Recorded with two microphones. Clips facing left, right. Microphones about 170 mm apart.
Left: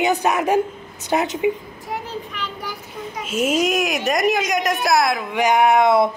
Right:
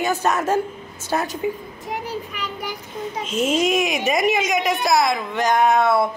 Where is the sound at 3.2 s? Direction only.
5° left (ahead or behind).